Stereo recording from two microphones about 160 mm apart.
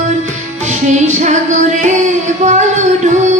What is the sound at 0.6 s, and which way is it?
Music, 50° right (ahead or behind).